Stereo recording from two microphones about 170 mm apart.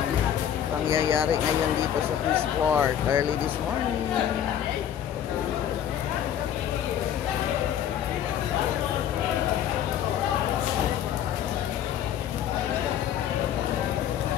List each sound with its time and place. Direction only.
0.8 s speech: 15° right (ahead or behind)
2.3 s speech: 15° right (ahead or behind)